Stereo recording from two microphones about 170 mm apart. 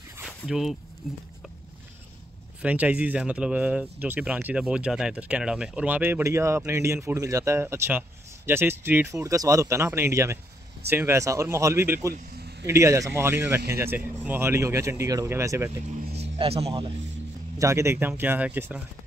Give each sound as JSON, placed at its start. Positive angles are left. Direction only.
{"t": 0.2, "sound": "a sound", "side_deg": 0}
{"t": 2.6, "sound": "speech", "side_deg": -10}
{"t": 12.4, "sound": "a sound", "side_deg": -75}
{"t": 12.7, "sound": "speech", "side_deg": -15}
{"t": 16.3, "sound": "speech", "side_deg": -35}
{"t": 17.6, "sound": "speech", "side_deg": -15}